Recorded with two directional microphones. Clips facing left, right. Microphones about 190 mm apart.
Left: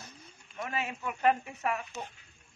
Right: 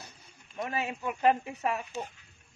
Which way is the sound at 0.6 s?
35° right (ahead or behind).